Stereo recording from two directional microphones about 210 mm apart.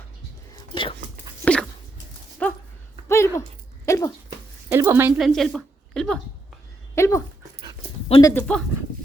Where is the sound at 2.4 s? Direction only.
5° left (ahead or behind).